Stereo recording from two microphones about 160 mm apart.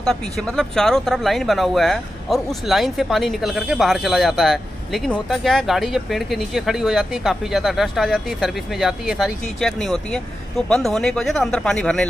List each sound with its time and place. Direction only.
0.0 s speech: 5° left (ahead or behind)